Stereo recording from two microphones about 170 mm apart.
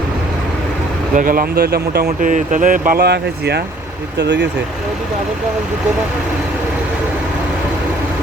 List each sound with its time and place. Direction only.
1.1 s speech: 50° right (ahead or behind)
2.0 s speech: 50° right (ahead or behind); by 3.6 s 75° right (ahead or behind)
4.2 s speech: 90° right